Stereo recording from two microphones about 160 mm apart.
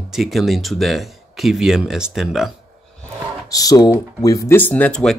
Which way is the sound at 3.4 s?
20° left (ahead or behind).